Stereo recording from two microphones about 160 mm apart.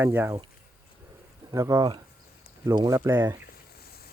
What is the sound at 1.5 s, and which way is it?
Speech, 20° right (ahead or behind).